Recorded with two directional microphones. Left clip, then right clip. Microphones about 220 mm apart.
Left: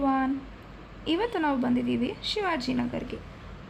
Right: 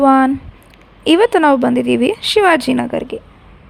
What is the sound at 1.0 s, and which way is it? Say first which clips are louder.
A woman's voice: right 16 dB; 50° right (ahead or behind).